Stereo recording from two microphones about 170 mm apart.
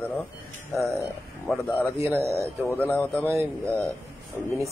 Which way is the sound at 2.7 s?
10° left (ahead or behind).